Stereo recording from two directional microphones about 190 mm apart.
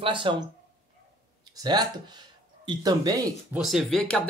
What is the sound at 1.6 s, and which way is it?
Speech, 20° right (ahead or behind).